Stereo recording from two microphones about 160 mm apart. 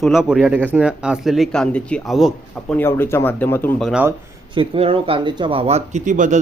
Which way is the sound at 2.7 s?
15° left (ahead or behind).